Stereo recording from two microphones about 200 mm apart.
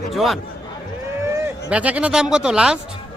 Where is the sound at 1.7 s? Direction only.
5° right (ahead or behind).